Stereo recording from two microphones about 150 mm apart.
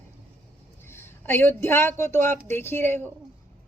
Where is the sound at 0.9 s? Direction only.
15° left (ahead or behind).